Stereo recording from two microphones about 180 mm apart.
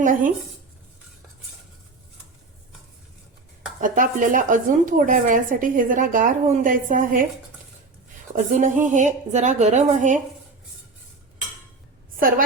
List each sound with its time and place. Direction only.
0.0 s a woman's voice: 45° right (ahead or behind)
3.8 s a woman's voice: 45° right (ahead or behind)
8.4 s a woman's voice: 45° right (ahead or behind)
12.1 s a woman's voice: 55° right (ahead or behind)